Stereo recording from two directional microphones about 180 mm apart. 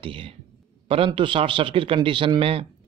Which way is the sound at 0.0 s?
30° right (ahead or behind).